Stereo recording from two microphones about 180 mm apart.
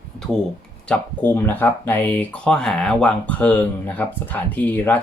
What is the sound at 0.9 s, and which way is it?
Speech, 10° left (ahead or behind).